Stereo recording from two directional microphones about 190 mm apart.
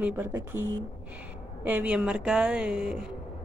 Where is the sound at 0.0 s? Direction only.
10° right (ahead or behind).